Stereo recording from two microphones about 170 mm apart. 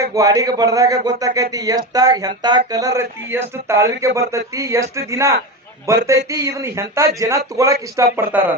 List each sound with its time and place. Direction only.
0.0 s speech: 20° right (ahead or behind)